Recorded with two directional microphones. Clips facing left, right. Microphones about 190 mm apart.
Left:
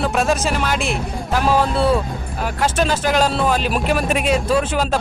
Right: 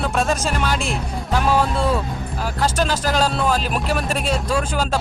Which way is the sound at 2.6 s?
5° left (ahead or behind).